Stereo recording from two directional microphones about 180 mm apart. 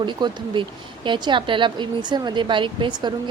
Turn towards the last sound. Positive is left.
turn(degrees=-25)  # may be behind; listen again after turning